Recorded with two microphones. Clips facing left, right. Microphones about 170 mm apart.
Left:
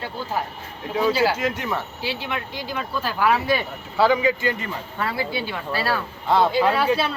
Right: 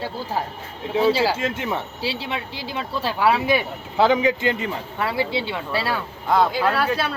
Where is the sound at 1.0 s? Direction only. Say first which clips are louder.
Right 1 dB; 30° right (ahead or behind).